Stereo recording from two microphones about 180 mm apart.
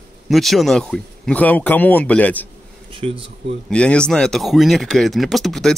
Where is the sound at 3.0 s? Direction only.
35° right (ahead or behind).